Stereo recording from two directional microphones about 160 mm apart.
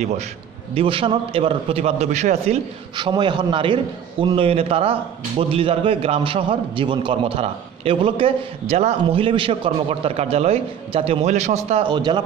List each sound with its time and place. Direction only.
0.7 s a man's voice: 35° right (ahead or behind)
11.9 s speech: 25° right (ahead or behind)